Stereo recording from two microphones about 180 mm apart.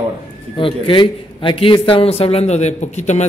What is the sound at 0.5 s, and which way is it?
A man's voice, 30° left (ahead or behind).